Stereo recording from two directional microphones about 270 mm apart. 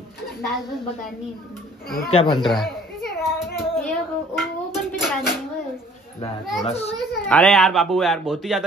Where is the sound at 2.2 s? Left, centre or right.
Centre.